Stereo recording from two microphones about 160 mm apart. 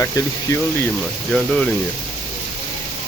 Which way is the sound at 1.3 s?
5° left (ahead or behind).